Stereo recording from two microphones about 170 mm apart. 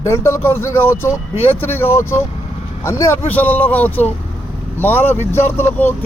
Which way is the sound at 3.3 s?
10° left (ahead or behind).